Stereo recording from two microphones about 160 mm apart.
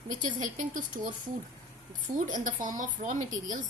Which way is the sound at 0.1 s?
55° right (ahead or behind).